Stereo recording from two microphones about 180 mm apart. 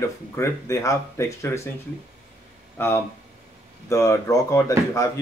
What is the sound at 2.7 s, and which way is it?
Speech, 15° left (ahead or behind).